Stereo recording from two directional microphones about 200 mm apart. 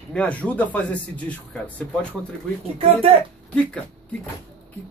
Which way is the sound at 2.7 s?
30° right (ahead or behind).